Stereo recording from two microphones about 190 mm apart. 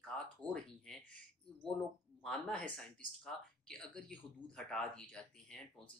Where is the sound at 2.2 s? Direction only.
5° left (ahead or behind).